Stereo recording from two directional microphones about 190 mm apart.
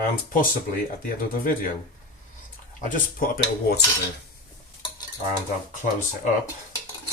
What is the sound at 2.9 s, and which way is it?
Speech, 50° left (ahead or behind).